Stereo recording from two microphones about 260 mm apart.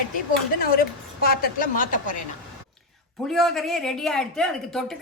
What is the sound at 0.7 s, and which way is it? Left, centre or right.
A woman's voice, left.